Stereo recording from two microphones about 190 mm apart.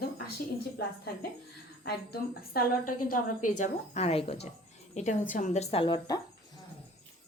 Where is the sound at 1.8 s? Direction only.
55° left (ahead or behind).